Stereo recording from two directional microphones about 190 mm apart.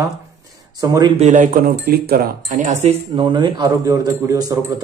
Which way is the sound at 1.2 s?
40° right (ahead or behind).